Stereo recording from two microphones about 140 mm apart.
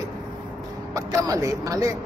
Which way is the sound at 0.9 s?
25° right (ahead or behind).